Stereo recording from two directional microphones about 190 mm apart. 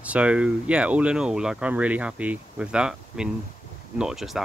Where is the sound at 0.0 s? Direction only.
5° right (ahead or behind).